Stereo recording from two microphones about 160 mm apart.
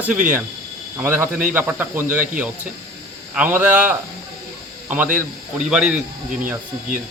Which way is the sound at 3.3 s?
10° right (ahead or behind).